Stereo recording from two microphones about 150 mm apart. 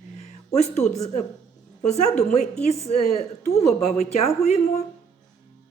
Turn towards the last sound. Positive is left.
turn(degrees=45)  # may be behind; listen again after turning